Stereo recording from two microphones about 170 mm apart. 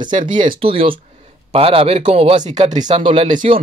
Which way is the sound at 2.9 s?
30° right (ahead or behind).